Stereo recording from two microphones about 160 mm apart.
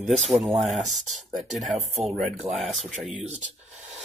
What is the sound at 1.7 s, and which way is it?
Speech, 40° right (ahead or behind).